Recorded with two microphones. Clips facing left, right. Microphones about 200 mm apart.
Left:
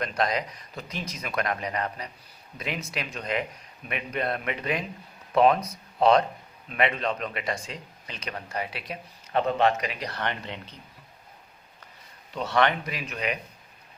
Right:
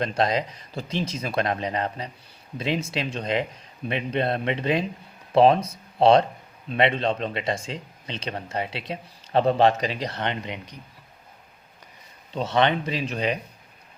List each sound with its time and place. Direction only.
0.0 s speech: 25° right (ahead or behind)
12.3 s speech: 20° right (ahead or behind)